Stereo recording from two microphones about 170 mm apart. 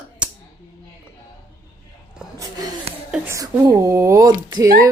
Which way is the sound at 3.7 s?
15° right (ahead or behind).